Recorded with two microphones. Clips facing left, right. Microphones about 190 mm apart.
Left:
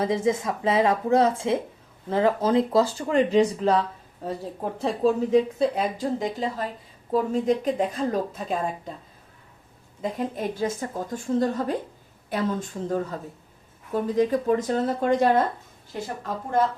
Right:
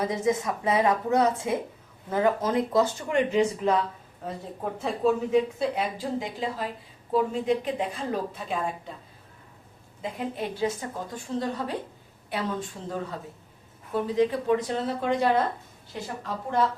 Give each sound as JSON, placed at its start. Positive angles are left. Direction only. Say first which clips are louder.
{"t": 0.0, "sound": "a woman's voice", "louder": "left 2 dB", "side_deg": 25}
{"t": 10.0, "sound": "a woman's voice", "louder": "left 3 dB", "side_deg": 45}